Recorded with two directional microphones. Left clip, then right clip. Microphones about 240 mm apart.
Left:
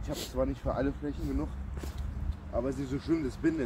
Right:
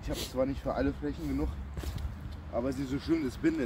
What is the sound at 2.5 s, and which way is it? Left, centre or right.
Speech, centre.